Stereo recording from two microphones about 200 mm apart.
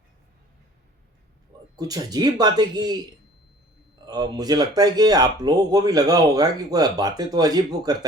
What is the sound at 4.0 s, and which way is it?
Speech, 20° right (ahead or behind).